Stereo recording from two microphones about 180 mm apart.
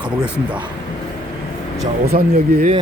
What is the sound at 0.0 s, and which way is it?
Speech, 5° right (ahead or behind).